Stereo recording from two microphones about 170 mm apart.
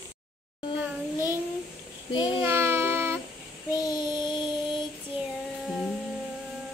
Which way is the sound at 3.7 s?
25° left (ahead or behind).